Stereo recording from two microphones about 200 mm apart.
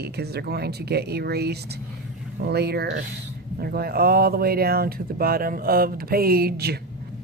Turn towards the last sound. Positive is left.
turn(degrees=-50)  # may be behind; listen again after turning